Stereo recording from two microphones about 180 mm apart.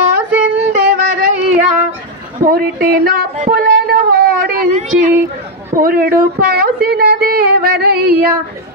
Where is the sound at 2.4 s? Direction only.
55° right (ahead or behind).